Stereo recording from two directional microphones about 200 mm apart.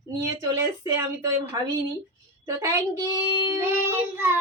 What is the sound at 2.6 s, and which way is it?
Speech, 15° right (ahead or behind).